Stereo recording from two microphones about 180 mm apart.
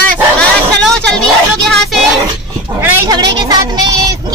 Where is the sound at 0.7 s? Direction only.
5° left (ahead or behind).